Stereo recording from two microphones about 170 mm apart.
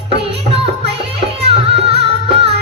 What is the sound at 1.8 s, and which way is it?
Music, 35° right (ahead or behind).